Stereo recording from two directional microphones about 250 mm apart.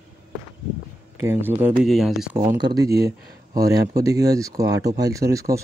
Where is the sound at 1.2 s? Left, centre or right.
Centre.